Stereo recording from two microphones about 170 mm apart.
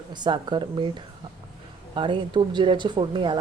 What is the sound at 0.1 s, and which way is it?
Speech, 25° right (ahead or behind).